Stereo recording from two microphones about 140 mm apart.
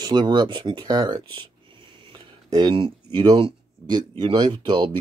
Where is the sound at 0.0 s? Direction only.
30° right (ahead or behind).